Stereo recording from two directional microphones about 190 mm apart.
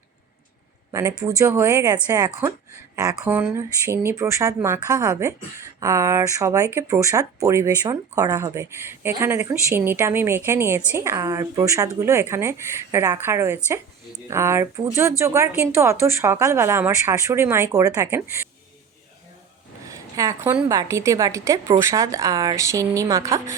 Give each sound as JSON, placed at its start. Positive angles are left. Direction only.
{"t": 0.9, "sound": "speech", "side_deg": -15}
{"t": 19.8, "sound": "speech", "side_deg": -15}